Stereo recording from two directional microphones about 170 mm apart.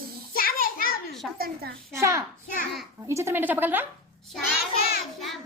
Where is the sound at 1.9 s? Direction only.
15° right (ahead or behind).